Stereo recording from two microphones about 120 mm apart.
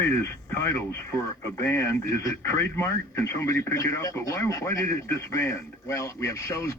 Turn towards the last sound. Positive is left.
turn(degrees=25)  # may be behind; listen again after turning